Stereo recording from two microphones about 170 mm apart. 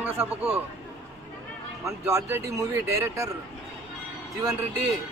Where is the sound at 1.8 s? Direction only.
15° right (ahead or behind).